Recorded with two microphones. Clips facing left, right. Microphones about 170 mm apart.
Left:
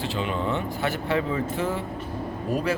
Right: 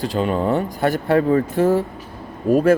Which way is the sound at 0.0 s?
40° right (ahead or behind).